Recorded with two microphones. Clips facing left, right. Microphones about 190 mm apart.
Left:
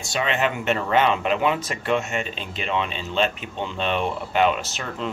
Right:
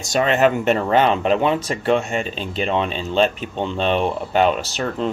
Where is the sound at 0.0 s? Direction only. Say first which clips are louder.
Right 7 dB; 40° right (ahead or behind).